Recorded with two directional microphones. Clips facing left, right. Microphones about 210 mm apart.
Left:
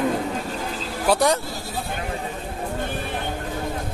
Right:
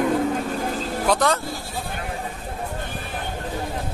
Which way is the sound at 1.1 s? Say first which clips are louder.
Left 2 dB; 10° left (ahead or behind).